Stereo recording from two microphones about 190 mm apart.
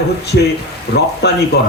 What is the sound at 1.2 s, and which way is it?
Speech, 60° left (ahead or behind).